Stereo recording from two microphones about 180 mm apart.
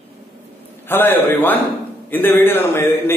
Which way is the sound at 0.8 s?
10° left (ahead or behind).